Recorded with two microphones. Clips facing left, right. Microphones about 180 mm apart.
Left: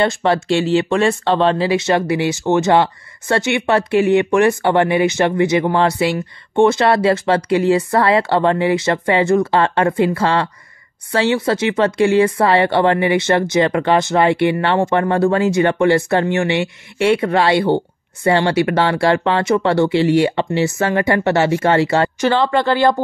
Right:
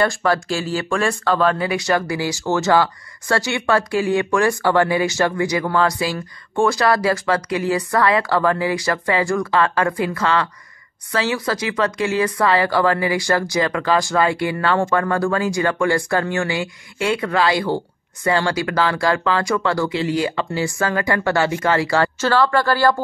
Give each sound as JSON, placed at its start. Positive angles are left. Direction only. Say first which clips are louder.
{"t": 0.0, "sound": "speech", "louder": "left 3 dB", "side_deg": 25}